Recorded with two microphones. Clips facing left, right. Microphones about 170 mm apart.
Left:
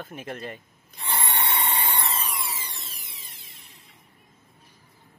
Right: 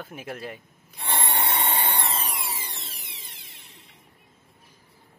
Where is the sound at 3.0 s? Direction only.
75° right (ahead or behind).